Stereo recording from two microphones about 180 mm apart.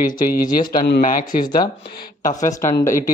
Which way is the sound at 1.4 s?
20° left (ahead or behind).